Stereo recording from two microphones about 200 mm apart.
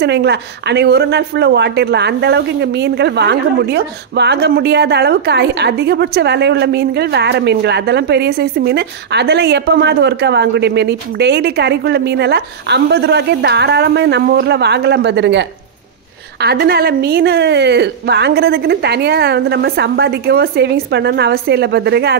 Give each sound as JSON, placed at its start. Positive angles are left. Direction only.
{"t": 0.0, "sound": "speech", "side_deg": -55}